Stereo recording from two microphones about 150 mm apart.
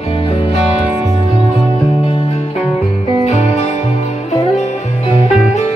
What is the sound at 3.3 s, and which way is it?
Music, 50° left (ahead or behind).